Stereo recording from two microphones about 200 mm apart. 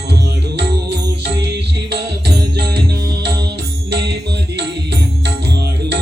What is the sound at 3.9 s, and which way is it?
Music, 55° right (ahead or behind).